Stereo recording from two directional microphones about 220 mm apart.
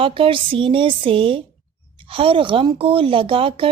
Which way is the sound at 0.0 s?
25° right (ahead or behind).